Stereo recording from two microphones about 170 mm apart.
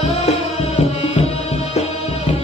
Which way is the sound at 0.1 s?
35° left (ahead or behind).